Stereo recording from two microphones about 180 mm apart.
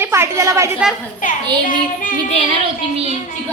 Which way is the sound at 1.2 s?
45° left (ahead or behind).